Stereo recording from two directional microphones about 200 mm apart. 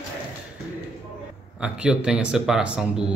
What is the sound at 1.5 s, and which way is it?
Speech, 5° right (ahead or behind).